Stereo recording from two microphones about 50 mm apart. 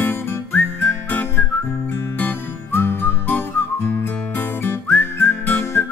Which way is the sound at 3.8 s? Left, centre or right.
Left.